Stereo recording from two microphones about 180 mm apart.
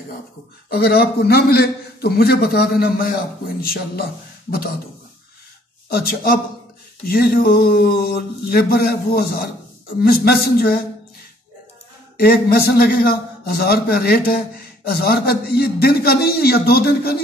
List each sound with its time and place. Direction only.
0.7 s a man's voice: 60° left (ahead or behind)
5.9 s a man's voice: 60° left (ahead or behind)
12.2 s a man's voice: 60° left (ahead or behind)